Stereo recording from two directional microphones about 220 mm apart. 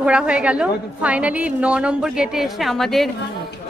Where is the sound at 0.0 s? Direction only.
5° right (ahead or behind).